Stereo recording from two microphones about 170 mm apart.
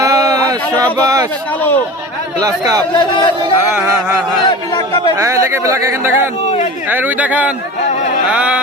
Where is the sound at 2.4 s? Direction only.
20° right (ahead or behind).